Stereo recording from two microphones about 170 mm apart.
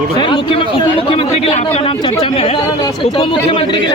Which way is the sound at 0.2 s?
25° left (ahead or behind).